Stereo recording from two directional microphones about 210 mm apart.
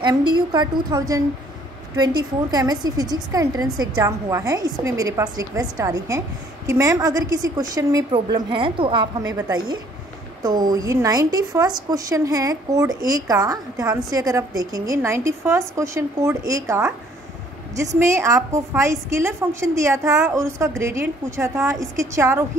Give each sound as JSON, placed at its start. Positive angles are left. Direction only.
{"t": 0.0, "sound": "a woman's voice", "side_deg": -20}
{"t": 2.5, "sound": "a woman's voice", "side_deg": -20}